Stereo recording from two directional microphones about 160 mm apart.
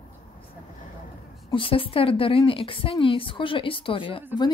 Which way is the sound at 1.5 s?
35° left (ahead or behind).